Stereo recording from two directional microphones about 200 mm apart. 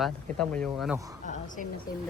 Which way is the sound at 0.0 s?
5° left (ahead or behind).